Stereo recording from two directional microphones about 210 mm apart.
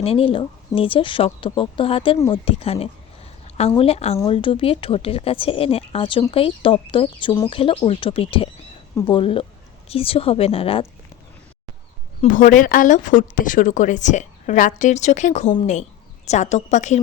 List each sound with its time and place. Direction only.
0.0 s speech: 25° left (ahead or behind)
2.1 s speech: 15° left (ahead or behind)
2.4 s speech: 25° left (ahead or behind)
12.2 s speech: 40° left (ahead or behind)